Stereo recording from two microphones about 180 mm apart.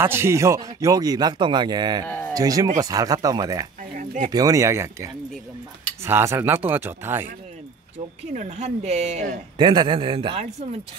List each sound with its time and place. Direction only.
0.0 s speech: 15° right (ahead or behind)
2.0 s speech: 10° left (ahead or behind)
2.3 s speech: 20° right (ahead or behind)
3.9 s speech: 45° right (ahead or behind)
4.3 s speech: 20° right (ahead or behind)
8.4 s a woman's voice: 40° right (ahead or behind)
9.6 s speech: 25° right (ahead or behind)